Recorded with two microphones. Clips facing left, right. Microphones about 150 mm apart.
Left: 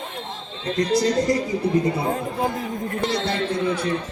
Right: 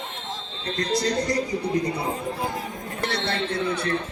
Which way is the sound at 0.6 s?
20° left (ahead or behind).